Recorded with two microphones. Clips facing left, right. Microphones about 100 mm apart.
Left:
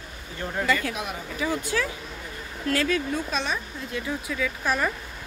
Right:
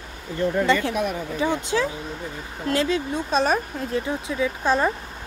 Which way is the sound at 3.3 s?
45° right (ahead or behind).